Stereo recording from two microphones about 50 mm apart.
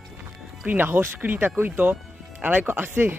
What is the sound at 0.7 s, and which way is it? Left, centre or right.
Speech, right.